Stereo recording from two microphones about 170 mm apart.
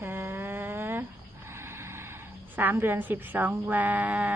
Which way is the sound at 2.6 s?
10° right (ahead or behind).